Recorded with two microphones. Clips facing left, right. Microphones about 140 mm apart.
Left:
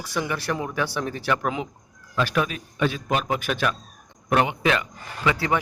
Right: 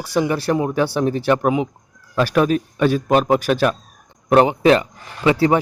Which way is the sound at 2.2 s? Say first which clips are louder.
Right 8 dB; 40° right (ahead or behind).